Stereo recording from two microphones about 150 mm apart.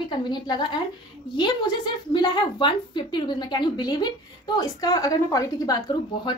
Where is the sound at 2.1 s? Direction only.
30° left (ahead or behind).